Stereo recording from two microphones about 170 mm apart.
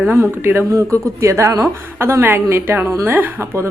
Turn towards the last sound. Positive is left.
turn(degrees=-10)  # may be behind; listen again after turning